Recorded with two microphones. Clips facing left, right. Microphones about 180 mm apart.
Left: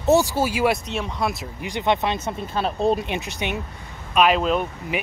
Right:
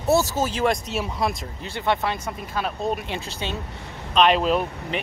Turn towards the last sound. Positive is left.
turn(degrees=0)  # may be behind; listen again after turning